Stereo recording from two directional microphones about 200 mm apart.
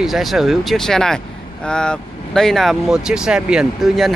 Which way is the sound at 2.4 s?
Centre (ahead or behind).